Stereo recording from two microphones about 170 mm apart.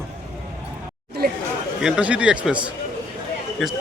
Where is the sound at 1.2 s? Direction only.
70° right (ahead or behind).